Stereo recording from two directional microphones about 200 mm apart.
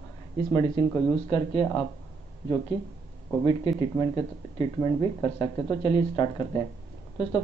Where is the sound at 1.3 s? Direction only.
25° left (ahead or behind).